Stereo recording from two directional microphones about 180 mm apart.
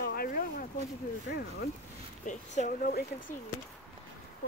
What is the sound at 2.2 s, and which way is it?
Speech, 40° left (ahead or behind).